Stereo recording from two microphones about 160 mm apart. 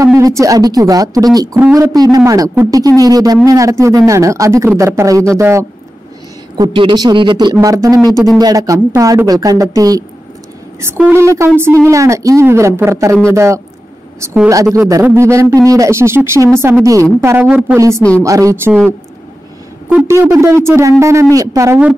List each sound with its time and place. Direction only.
0.0 s speech: 20° right (ahead or behind)
6.5 s speech: 30° right (ahead or behind)
19.9 s speech: 15° right (ahead or behind)